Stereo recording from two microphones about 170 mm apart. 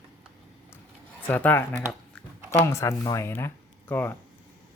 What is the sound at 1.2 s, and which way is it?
A man's voice, 10° left (ahead or behind).